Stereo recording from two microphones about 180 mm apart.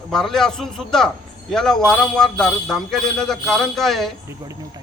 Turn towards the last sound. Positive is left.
turn(degrees=0)  # may be behind; listen again after turning